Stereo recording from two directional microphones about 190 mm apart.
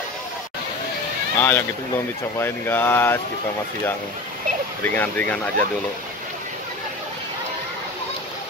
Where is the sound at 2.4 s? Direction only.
10° left (ahead or behind).